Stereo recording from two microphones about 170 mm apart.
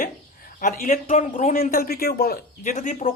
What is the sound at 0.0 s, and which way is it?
Speech, 55° left (ahead or behind).